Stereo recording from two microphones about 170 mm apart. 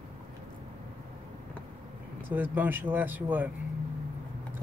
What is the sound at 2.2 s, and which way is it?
Speech, 10° right (ahead or behind).